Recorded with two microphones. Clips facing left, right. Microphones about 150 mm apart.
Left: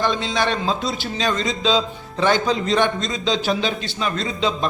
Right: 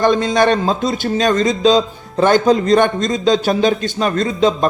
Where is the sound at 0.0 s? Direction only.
45° right (ahead or behind).